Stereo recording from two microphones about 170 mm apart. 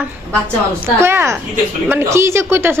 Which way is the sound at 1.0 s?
15° right (ahead or behind).